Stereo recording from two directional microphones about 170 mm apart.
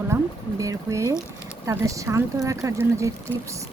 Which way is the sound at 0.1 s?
15° right (ahead or behind).